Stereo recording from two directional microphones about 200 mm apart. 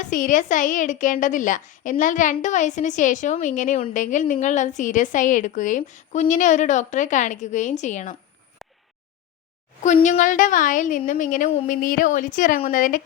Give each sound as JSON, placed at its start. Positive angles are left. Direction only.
{"t": 0.0, "sound": "a woman's voice", "side_deg": 40}
{"t": 8.6, "sound": "a sound", "side_deg": 0}
{"t": 9.8, "sound": "a woman's voice", "side_deg": 35}